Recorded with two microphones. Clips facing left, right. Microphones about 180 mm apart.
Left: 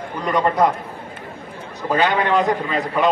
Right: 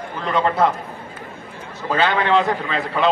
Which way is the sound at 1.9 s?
15° left (ahead or behind).